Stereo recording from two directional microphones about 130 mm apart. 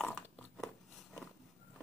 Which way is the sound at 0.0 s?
5° left (ahead or behind).